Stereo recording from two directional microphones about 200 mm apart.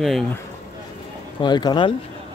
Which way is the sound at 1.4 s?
20° left (ahead or behind).